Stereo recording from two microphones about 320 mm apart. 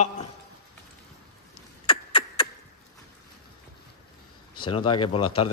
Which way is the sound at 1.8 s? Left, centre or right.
Centre.